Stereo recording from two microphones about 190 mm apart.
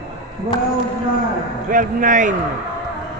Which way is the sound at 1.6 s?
45° right (ahead or behind).